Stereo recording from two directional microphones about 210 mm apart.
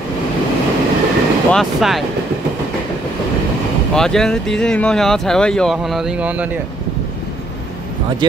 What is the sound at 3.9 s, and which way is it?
Speech, 5° left (ahead or behind).